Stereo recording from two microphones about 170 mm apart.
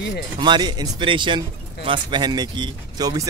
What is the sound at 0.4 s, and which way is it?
Speech, 25° right (ahead or behind).